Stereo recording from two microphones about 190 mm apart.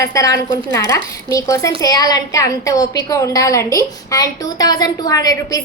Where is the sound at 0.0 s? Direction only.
15° left (ahead or behind).